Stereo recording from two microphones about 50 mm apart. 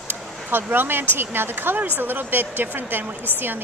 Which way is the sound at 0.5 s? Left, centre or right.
Right.